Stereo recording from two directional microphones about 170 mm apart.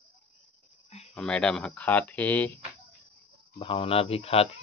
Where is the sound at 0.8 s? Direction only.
35° left (ahead or behind).